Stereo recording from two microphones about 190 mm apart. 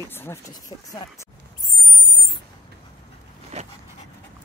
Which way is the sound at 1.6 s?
Centre (ahead or behind).